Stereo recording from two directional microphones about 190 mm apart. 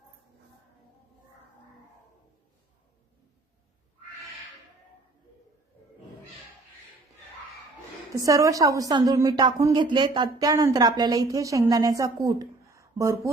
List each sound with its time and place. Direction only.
8.1 s a woman's voice: 15° right (ahead or behind)